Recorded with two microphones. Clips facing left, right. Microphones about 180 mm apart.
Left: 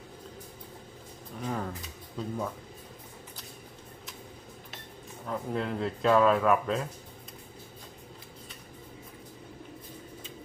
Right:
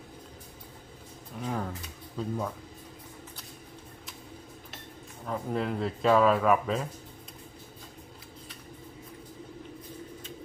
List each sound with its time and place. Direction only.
1.4 s a sound: centre (ahead or behind)
2.1 s speech: centre (ahead or behind)
5.2 s speech: centre (ahead or behind)